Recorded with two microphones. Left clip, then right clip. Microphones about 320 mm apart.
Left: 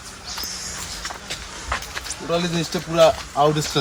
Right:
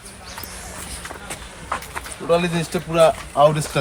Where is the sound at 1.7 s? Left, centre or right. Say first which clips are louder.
Even; centre.